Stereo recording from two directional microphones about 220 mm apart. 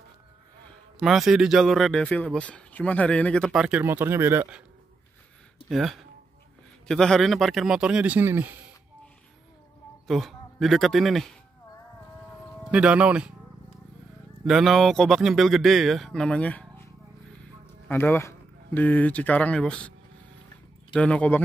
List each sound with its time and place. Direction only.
0.7 s a man's voice: centre (ahead or behind)
5.7 s a man's voice: centre (ahead or behind)
10.0 s speech: centre (ahead or behind)
12.7 s a man's voice: 5° right (ahead or behind)
14.4 s a man's voice: centre (ahead or behind)
20.9 s a man's voice: 5° left (ahead or behind)